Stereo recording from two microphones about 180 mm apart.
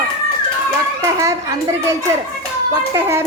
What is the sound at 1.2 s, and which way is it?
A woman's voice, 15° right (ahead or behind).